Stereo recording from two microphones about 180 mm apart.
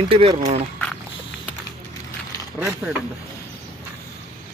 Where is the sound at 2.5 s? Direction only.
5° right (ahead or behind).